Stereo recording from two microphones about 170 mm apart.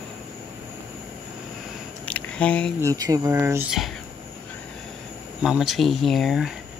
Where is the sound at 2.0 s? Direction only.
10° left (ahead or behind).